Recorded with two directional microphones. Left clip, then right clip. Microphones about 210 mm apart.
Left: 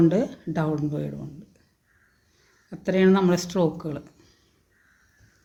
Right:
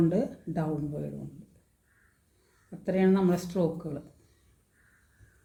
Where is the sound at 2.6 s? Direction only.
45° left (ahead or behind).